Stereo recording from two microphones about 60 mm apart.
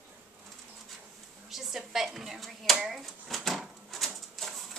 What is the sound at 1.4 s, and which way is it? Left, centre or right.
Speech, centre.